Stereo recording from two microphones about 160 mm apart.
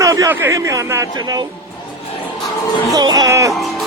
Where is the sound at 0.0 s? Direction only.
20° right (ahead or behind).